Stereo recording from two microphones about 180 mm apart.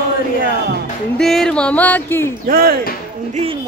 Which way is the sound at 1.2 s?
5° left (ahead or behind).